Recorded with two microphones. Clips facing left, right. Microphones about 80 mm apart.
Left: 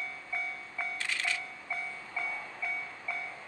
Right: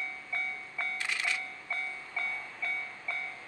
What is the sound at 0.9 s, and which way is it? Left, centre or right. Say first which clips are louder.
Music: even; centre.